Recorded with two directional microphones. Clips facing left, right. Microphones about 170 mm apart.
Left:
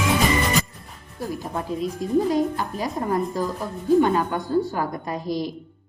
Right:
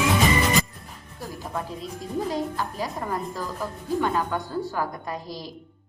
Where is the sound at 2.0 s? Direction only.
15° left (ahead or behind).